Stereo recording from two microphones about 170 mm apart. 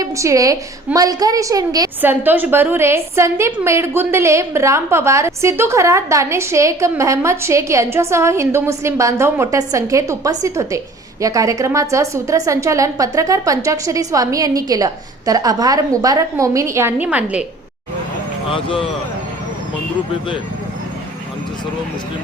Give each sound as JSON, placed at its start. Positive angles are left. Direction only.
{"t": 0.0, "sound": "a woman's voice", "side_deg": -20}
{"t": 2.0, "sound": "a woman's voice", "side_deg": -10}
{"t": 18.5, "sound": "a man's voice", "side_deg": 30}